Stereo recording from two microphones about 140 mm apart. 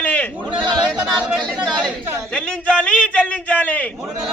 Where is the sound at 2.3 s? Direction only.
10° left (ahead or behind).